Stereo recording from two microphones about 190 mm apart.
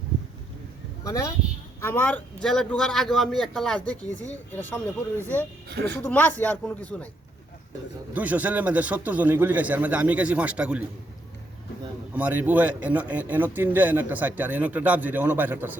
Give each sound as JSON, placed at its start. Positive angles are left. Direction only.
{"t": 1.0, "sound": "a man's voice", "side_deg": 15}
{"t": 5.1, "sound": "a man's voice", "side_deg": -15}
{"t": 5.6, "sound": "speech", "side_deg": -60}
{"t": 5.9, "sound": "speech", "side_deg": 10}
{"t": 8.1, "sound": "a man's voice", "side_deg": -10}
{"t": 12.1, "sound": "a man's voice", "side_deg": -10}